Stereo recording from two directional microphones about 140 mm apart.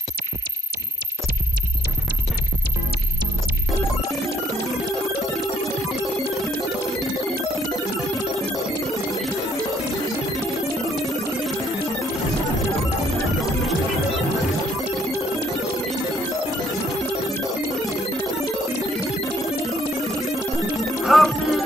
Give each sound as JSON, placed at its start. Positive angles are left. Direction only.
{"t": 21.0, "sound": "music", "side_deg": 0}